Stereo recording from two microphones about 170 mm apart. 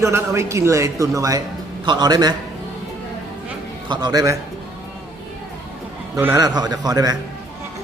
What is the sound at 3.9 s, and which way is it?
Speech, 25° right (ahead or behind).